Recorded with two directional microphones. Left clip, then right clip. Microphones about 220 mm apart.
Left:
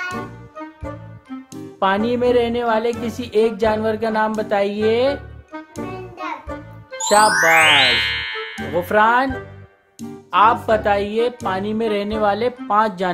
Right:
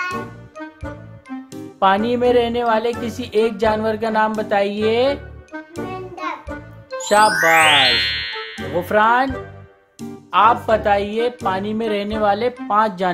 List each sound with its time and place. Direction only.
1.5 s speech: centre (ahead or behind)
5.8 s music: 15° right (ahead or behind)
7.0 s speech: centre (ahead or behind)